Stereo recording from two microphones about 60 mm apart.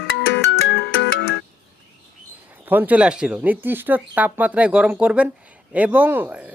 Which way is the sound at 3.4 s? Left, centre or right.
Right.